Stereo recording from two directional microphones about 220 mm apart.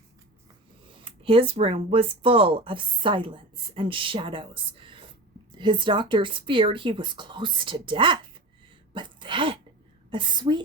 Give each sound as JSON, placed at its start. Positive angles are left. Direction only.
{"t": 1.0, "sound": "speech", "side_deg": -25}
{"t": 8.9, "sound": "sneeze", "side_deg": -20}
{"t": 10.1, "sound": "speech", "side_deg": -20}